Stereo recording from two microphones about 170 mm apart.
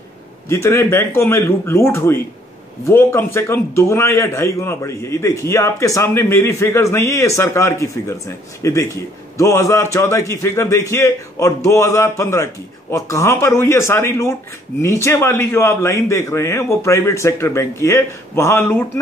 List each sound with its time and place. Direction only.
0.5 s a man's voice: 15° left (ahead or behind)